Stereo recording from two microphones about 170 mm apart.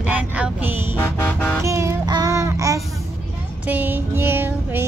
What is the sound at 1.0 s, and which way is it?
Music, 10° left (ahead or behind).